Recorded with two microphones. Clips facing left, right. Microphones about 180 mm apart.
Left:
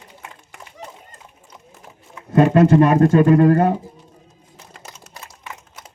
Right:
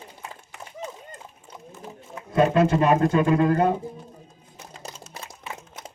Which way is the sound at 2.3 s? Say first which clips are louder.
Left 6 dB; 50° left (ahead or behind).